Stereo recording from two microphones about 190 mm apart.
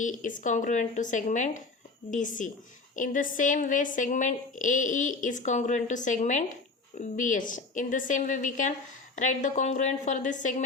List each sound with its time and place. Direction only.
0.0 s a woman's voice: 45° left (ahead or behind)